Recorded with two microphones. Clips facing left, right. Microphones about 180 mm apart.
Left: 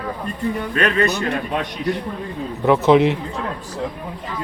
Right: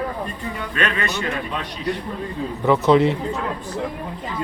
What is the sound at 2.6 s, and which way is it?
Speech, 15° left (ahead or behind).